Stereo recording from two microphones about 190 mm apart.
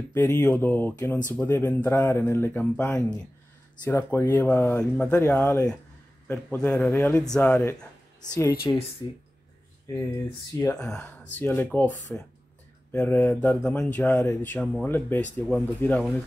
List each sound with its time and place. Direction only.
0.1 s speech: 10° left (ahead or behind)
8.3 s speech: 20° left (ahead or behind)
10.8 s speech: 5° left (ahead or behind)